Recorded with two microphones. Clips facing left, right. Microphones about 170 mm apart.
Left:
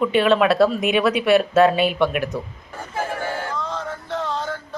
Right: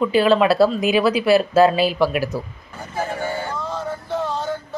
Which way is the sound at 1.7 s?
30° right (ahead or behind).